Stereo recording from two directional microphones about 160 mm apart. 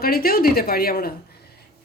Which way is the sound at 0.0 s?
70° left (ahead or behind).